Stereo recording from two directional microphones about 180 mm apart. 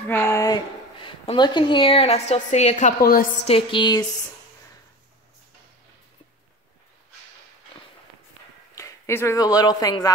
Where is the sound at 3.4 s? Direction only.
30° left (ahead or behind).